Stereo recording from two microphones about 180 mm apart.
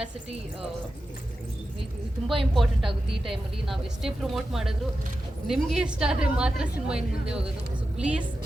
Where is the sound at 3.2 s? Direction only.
Centre (ahead or behind).